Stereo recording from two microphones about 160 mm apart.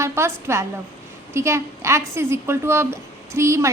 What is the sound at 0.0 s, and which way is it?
A woman's voice, 15° right (ahead or behind).